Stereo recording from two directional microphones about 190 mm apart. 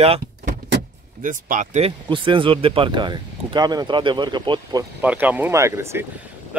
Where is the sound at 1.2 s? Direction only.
45° right (ahead or behind); by 4.8 s 25° right (ahead or behind).